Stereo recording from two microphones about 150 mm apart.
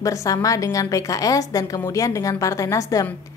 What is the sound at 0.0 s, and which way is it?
A woman's voice, 20° left (ahead or behind).